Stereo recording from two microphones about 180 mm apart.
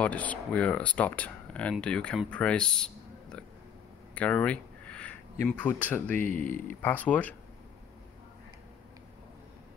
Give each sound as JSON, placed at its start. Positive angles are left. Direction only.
{"t": 0.0, "sound": "speech", "side_deg": 10}
{"t": 4.1, "sound": "a sound", "side_deg": 5}
{"t": 6.4, "sound": "speech", "side_deg": 45}
{"t": 6.8, "sound": "speech", "side_deg": 10}